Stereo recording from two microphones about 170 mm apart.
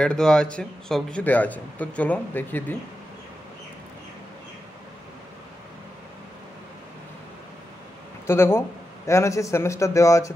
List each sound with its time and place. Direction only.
0.0 s a man's voice: 5° left (ahead or behind)
8.3 s a man's voice: 15° left (ahead or behind)